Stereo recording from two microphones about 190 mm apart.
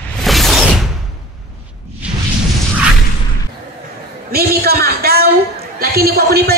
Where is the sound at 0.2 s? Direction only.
Centre (ahead or behind).